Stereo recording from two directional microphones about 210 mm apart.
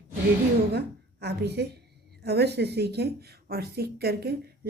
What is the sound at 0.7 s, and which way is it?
A woman's voice, 50° right (ahead or behind).